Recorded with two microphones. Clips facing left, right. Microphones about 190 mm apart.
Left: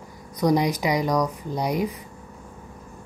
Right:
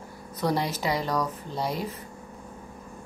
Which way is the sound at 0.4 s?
15° left (ahead or behind).